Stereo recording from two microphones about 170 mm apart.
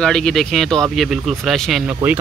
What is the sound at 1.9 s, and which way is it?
Speech, 10° right (ahead or behind).